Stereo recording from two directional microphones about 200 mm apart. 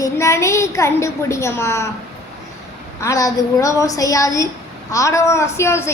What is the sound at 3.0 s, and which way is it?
A woman's voice, 15° left (ahead or behind).